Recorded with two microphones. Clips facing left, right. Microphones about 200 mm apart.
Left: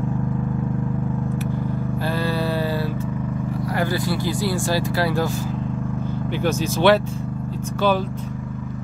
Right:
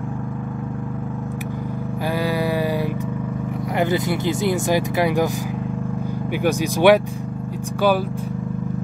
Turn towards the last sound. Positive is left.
turn(degrees=-15)  # may be behind; listen again after turning